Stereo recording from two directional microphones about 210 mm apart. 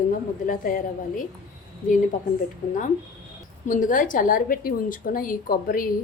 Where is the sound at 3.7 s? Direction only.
40° left (ahead or behind).